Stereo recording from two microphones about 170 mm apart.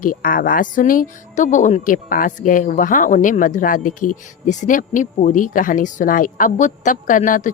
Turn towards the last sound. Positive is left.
turn(degrees=45)  # may be behind; listen again after turning